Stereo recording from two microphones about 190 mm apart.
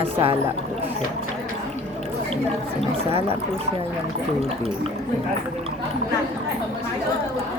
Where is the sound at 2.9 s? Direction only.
30° right (ahead or behind).